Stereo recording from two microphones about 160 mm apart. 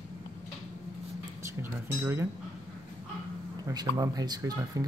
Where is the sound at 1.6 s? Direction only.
15° right (ahead or behind).